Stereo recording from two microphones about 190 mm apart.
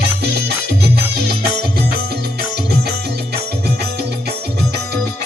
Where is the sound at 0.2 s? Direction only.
60° right (ahead or behind).